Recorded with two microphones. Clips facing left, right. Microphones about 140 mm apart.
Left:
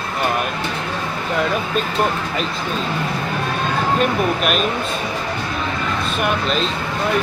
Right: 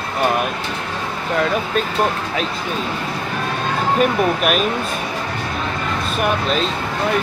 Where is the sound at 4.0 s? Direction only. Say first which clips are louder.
Right 4 dB; 5° right (ahead or behind).